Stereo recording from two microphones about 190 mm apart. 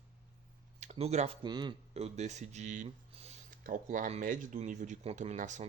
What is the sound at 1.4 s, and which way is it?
Speech, 25° right (ahead or behind).